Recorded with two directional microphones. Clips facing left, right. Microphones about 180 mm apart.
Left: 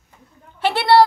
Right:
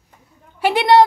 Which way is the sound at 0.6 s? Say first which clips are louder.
Right 2 dB; 15° right (ahead or behind).